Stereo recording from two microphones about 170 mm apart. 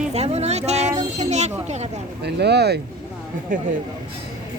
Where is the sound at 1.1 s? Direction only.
40° right (ahead or behind).